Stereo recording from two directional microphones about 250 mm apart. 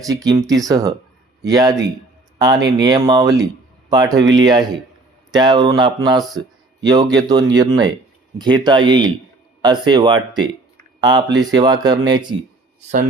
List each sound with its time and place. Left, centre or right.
0.1 s speech: centre